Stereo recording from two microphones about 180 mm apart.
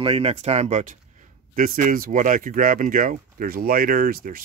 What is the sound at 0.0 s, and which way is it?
Speech, 30° right (ahead or behind).